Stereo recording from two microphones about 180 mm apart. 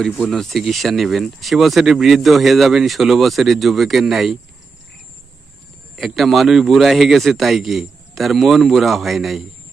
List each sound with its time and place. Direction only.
0.0 s speech: centre (ahead or behind)
6.0 s speech: centre (ahead or behind)